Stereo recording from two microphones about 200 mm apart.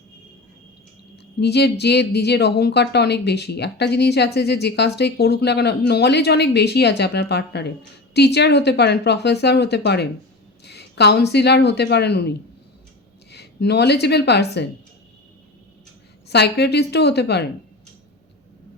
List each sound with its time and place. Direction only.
1.4 s a woman's voice: 55° left (ahead or behind)
13.3 s speech: 55° left (ahead or behind)
16.3 s speech: 55° left (ahead or behind)